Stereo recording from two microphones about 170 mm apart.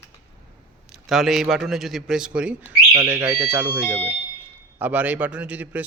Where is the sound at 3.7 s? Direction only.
25° right (ahead or behind).